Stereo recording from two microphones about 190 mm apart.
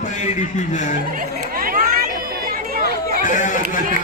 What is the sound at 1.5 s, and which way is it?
Chatter, 50° right (ahead or behind).